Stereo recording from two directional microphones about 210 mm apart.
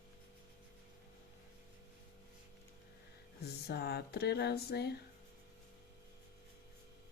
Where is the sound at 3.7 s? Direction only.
50° left (ahead or behind).